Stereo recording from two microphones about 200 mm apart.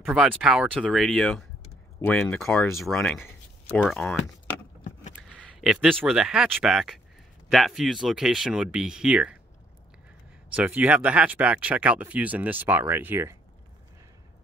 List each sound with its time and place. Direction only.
0.0 s speech: centre (ahead or behind)
10.5 s speech: 5° right (ahead or behind)